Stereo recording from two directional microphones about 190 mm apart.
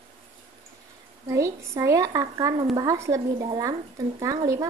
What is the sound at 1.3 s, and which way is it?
Speech, 15° right (ahead or behind).